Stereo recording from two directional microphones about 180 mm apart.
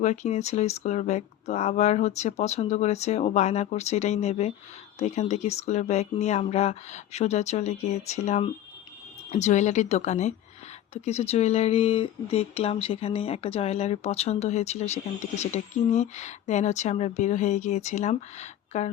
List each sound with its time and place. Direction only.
0.0 s speech: 40° left (ahead or behind)